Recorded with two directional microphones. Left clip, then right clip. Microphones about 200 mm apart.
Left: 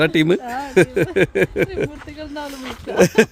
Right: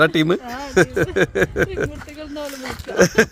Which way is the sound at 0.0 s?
20° left (ahead or behind).